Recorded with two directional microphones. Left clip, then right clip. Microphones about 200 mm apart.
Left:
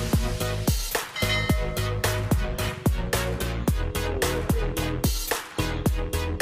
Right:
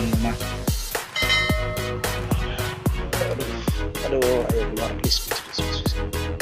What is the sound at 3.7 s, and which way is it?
Music, centre (ahead or behind).